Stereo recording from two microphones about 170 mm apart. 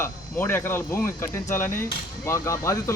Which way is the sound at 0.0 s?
15° left (ahead or behind).